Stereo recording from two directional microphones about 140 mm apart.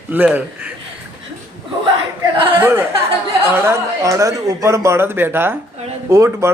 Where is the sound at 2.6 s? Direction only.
15° right (ahead or behind).